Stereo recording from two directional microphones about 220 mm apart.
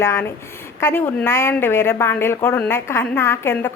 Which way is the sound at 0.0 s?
10° left (ahead or behind).